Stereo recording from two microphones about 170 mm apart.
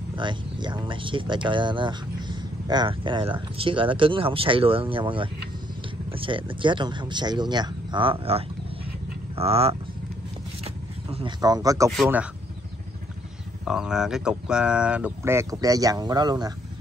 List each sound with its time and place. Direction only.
0.1 s speech: 25° right (ahead or behind)
10.6 s zipper: 35° right (ahead or behind)
11.4 s speech: 20° right (ahead or behind)
13.7 s speech: 5° right (ahead or behind); by 16.5 s 25° right (ahead or behind)